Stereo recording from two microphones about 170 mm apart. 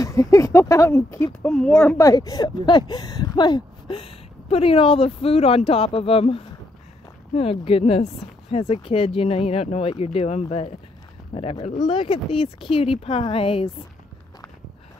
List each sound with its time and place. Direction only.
0.0 s speech: 20° left (ahead or behind)
1.5 s a woman's voice: centre (ahead or behind)
2.0 s speech: 20° left (ahead or behind)
7.5 s speech: 35° left (ahead or behind)
11.9 s speech: 30° left (ahead or behind)